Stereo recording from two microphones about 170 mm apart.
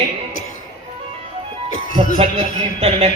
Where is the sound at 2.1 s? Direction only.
35° right (ahead or behind).